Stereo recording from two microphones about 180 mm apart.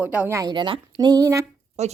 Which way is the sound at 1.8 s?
35° right (ahead or behind).